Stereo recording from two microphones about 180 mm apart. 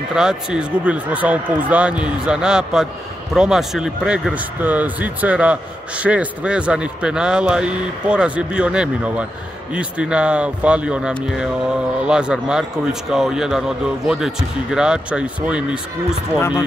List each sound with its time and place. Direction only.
0.1 s speech: 5° right (ahead or behind)
16.3 s speech: 15° left (ahead or behind)